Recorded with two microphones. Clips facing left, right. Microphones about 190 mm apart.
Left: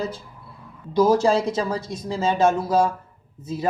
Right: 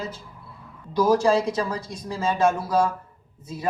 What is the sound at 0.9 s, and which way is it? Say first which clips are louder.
Speech: left 2 dB; 25° left (ahead or behind).